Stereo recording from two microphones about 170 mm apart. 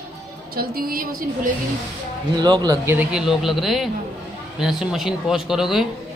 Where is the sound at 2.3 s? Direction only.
25° right (ahead or behind).